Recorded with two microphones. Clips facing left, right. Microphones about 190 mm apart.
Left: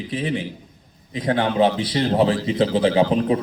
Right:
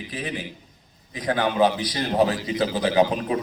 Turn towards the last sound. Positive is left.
turn(degrees=30)  # may be behind; listen again after turning